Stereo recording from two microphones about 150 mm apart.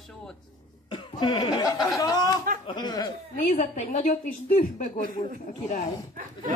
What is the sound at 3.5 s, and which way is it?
A woman's voice, 60° left (ahead or behind).